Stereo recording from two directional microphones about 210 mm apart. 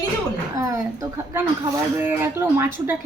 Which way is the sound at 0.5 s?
15° right (ahead or behind).